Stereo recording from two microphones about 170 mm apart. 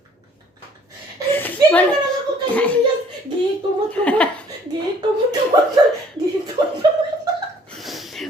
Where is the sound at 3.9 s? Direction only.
10° left (ahead or behind).